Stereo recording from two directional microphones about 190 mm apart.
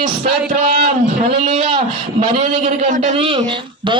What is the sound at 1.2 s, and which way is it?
A man's voice, 35° right (ahead or behind).